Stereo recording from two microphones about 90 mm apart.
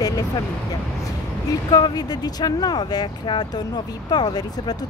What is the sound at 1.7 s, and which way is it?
Speech, 50° left (ahead or behind).